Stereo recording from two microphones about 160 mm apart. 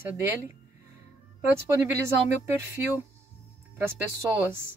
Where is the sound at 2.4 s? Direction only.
20° right (ahead or behind).